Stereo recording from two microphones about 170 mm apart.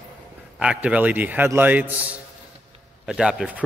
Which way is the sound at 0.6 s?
5° right (ahead or behind).